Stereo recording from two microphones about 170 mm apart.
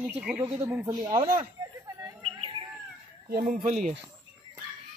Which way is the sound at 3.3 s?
55° right (ahead or behind).